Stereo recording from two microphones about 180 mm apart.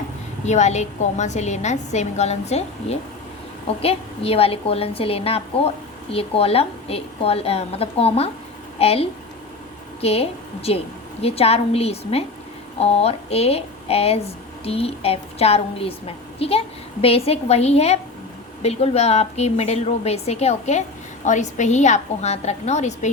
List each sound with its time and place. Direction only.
0.4 s a woman's voice: 40° left (ahead or behind)